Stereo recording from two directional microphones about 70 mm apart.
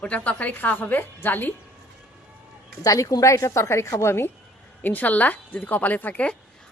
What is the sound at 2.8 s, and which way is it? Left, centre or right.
A woman's voice, left.